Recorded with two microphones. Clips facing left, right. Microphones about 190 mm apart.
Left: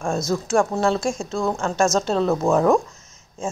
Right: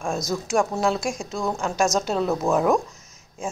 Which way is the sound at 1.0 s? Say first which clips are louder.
Left 4 dB; 30° left (ahead or behind).